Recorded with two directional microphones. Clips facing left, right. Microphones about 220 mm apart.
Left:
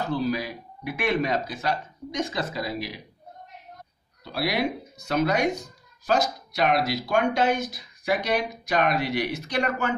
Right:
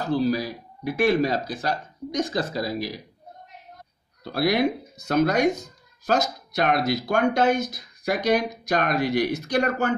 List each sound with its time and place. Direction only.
0.1 s speech: 35° right (ahead or behind)
4.2 s speech: 45° right (ahead or behind)
6.5 s speech: 50° right (ahead or behind)